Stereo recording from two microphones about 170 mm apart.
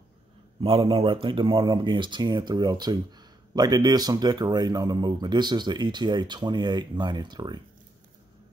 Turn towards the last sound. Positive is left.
turn(degrees=-25)  # may be behind; listen again after turning